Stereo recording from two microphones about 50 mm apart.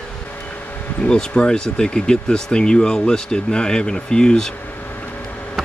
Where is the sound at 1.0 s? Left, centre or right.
Centre.